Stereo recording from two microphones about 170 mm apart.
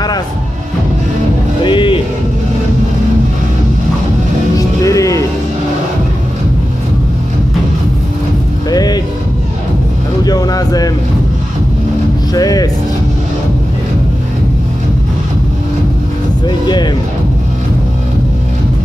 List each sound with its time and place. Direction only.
1.6 s a sound: 30° left (ahead or behind)
4.6 s music: 20° left (ahead or behind)
8.6 s music: 25° left (ahead or behind)
10.2 s a sound: 20° left (ahead or behind)
12.4 s music: 20° left (ahead or behind)
16.4 s music: 25° left (ahead or behind)